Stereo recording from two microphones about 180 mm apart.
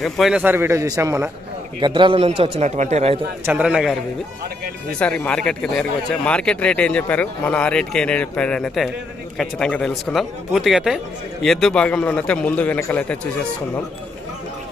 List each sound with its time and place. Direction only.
0.0 s a man's voice: centre (ahead or behind); by 3.2 s 35° right (ahead or behind)
3.4 s speech: 5° right (ahead or behind)
4.9 s speech: 5° left (ahead or behind)